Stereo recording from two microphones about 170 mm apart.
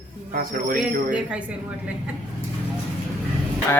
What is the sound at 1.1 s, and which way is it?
Speech, 5° right (ahead or behind).